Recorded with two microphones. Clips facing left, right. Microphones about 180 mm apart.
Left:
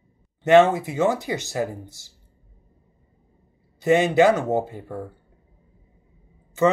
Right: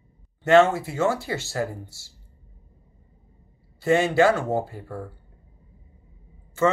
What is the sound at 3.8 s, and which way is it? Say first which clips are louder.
Speech: left 2 dB; 20° left (ahead or behind).